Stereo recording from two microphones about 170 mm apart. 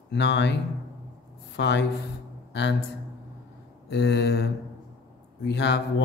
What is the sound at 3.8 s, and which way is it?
A man's voice, 85° left.